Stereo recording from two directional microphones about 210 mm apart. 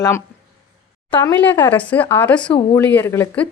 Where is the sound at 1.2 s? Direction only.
10° left (ahead or behind).